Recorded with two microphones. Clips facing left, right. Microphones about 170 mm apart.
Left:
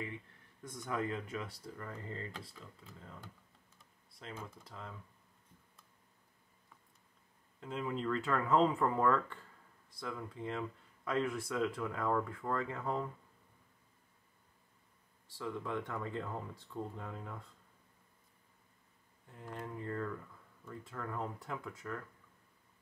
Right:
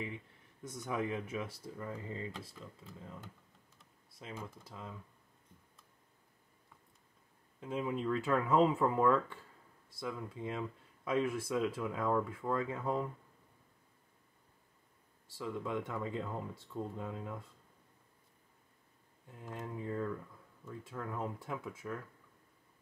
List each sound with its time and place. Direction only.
0.7 s speech: 10° right (ahead or behind)
4.2 s speech: 10° right (ahead or behind)
7.6 s speech: 10° right (ahead or behind)
15.4 s speech: 10° right (ahead or behind)
19.4 s speech: 10° right (ahead or behind)